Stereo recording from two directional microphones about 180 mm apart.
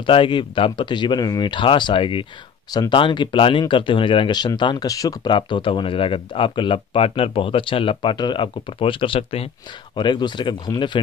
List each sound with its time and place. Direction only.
0.0 s speech: 30° left (ahead or behind)